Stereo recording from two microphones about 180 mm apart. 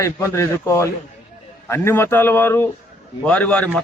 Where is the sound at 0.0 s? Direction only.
15° left (ahead or behind).